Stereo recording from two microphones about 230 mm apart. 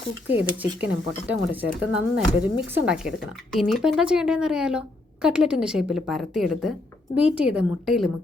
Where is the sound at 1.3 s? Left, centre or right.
Centre.